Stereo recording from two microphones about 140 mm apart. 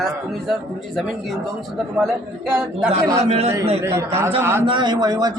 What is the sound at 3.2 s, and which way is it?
Speech, 45° right (ahead or behind).